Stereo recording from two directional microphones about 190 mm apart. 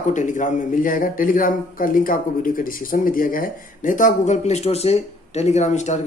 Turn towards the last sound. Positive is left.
turn(degrees=40)  # may be behind; listen again after turning